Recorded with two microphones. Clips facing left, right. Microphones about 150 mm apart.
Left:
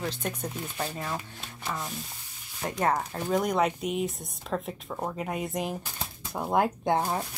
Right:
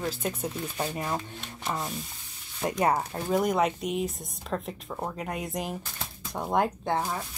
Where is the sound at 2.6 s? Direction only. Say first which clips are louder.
Right 2 dB; 15° right (ahead or behind).